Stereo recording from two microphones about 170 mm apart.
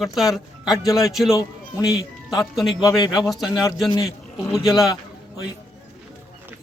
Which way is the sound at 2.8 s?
20° left (ahead or behind).